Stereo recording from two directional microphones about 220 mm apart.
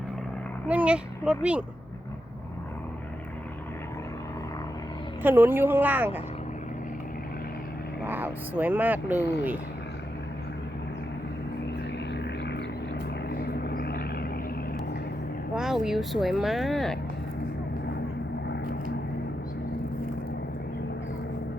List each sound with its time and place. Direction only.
0.7 s speech: 5° right (ahead or behind)
5.2 s speech: 10° right (ahead or behind)
8.0 s speech: 10° right (ahead or behind)
11.9 s a sound: 50° left (ahead or behind)
13.2 s vehicle: 45° left (ahead or behind)
15.5 s speech: centre (ahead or behind)